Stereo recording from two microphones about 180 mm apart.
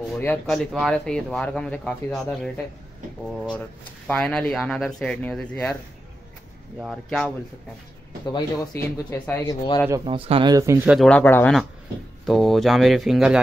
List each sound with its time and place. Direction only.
0.1 s speech: 5° left (ahead or behind)
4.1 s speech: 5° left (ahead or behind)
6.8 s speech: centre (ahead or behind)
8.3 s speech: 25° left (ahead or behind)
9.2 s speech: 10° left (ahead or behind)
10.0 s speech: 30° right (ahead or behind)
10.9 s speech: 5° left (ahead or behind)